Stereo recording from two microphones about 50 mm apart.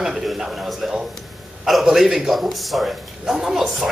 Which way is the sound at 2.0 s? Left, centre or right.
Centre.